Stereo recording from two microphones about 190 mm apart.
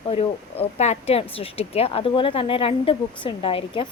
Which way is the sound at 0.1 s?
30° left (ahead or behind).